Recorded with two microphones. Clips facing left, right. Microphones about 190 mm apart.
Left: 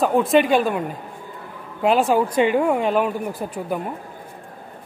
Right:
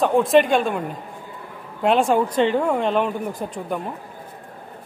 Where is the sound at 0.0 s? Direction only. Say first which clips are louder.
Right 1 dB; centre (ahead or behind).